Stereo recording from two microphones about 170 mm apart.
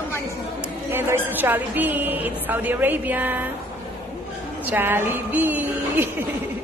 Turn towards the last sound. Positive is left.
turn(degrees=-10)  # may be behind; listen again after turning